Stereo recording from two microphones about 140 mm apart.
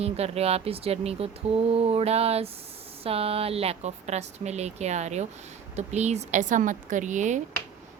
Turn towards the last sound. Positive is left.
turn(degrees=-60)  # may be behind; listen again after turning